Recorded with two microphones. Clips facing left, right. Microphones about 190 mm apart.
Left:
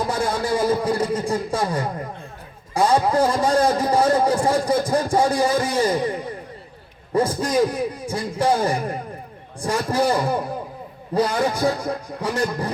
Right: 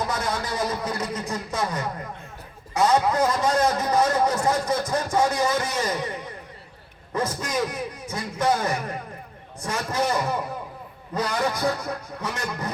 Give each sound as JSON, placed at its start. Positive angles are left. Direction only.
{"t": 0.0, "sound": "a man's voice", "side_deg": 30}